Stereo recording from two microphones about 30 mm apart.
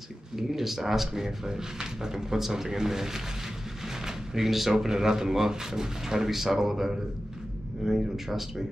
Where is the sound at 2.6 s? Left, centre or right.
Centre.